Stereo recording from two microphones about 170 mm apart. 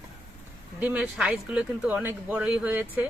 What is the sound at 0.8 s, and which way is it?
Speech, 5° right (ahead or behind).